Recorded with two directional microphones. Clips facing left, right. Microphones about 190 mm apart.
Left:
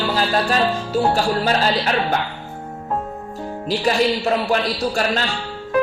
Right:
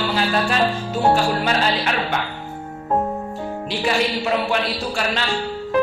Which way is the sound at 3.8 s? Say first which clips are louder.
Left 3 dB; 40° left (ahead or behind).